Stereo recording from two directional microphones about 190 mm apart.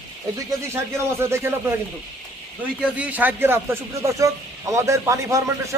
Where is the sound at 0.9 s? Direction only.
15° right (ahead or behind).